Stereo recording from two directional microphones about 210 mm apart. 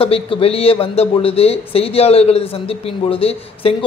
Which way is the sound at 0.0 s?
25° left (ahead or behind).